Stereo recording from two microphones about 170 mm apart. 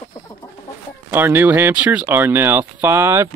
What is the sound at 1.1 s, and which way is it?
Speech, 10° right (ahead or behind).